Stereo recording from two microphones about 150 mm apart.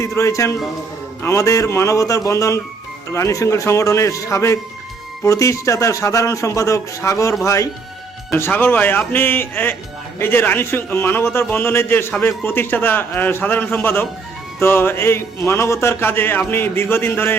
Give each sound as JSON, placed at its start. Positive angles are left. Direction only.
{"t": 0.0, "sound": "a man's voice", "side_deg": 20}